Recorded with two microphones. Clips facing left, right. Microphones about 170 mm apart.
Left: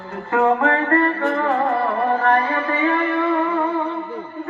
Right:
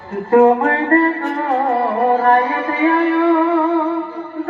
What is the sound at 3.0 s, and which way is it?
Music, 70° right (ahead or behind).